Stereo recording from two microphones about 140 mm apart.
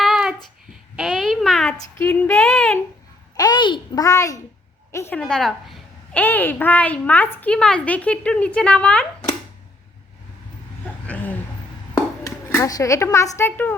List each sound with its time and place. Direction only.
0.0 s a sound: 5° right (ahead or behind)
2.0 s a woman's voice: 15° left (ahead or behind)
3.3 s a child's voice: 30° left (ahead or behind)
5.1 s a woman's voice: 5° left (ahead or behind)
6.1 s a woman's voice: 15° left (ahead or behind)
11.0 s a sound: 10° left (ahead or behind)
12.2 s speech: 25° left (ahead or behind)